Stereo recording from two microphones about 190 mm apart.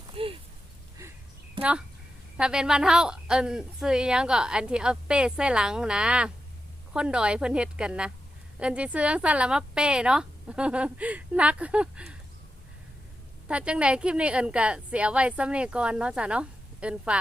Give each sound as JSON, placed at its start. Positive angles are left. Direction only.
{"t": 0.1, "sound": "a sound", "side_deg": -30}
{"t": 2.4, "sound": "a woman's voice", "side_deg": -5}
{"t": 13.5, "sound": "a woman's voice", "side_deg": -5}